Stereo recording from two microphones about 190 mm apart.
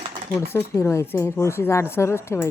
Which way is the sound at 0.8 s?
15° left (ahead or behind).